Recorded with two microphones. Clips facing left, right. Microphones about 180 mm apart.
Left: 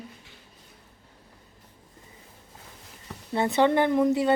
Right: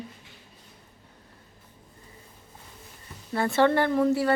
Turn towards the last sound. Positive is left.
turn(degrees=20)  # may be behind; listen again after turning